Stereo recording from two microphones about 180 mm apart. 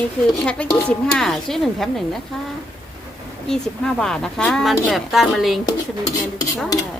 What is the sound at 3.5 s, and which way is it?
Speech, 5° left (ahead or behind).